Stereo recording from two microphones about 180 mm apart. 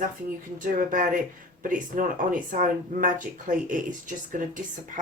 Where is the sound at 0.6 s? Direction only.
50° right (ahead or behind).